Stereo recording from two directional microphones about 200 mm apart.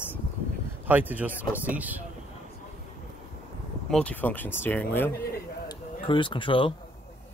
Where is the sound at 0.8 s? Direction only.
10° right (ahead or behind).